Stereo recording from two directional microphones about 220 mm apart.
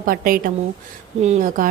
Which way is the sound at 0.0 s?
40° right (ahead or behind).